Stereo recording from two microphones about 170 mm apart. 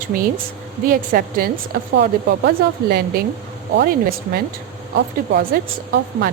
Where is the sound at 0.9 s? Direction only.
55° right (ahead or behind).